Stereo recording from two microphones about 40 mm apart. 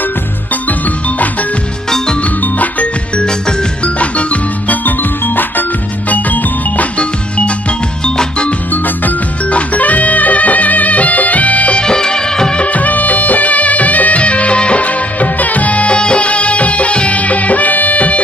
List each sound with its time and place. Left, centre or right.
0.7 s music: left
1.9 s music: centre
2.2 s music: left
3.2 s music: left
4.0 s music: left
4.8 s music: left
7.0 s music: left
8.7 s music: left
9.5 s music: left
11.8 s music of bollywood: centre
12.6 s music: left